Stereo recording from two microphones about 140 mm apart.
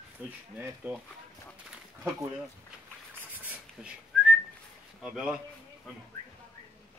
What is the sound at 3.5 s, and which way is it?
Whistling, 10° right (ahead or behind).